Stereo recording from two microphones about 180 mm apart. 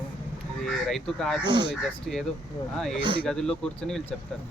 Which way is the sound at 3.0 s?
25° right (ahead or behind).